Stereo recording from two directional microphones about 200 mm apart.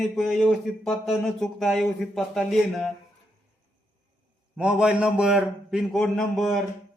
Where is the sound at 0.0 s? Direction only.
Centre (ahead or behind).